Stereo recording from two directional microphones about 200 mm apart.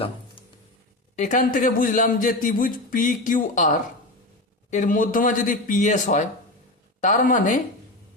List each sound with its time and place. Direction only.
1.1 s a man's voice: 35° left (ahead or behind)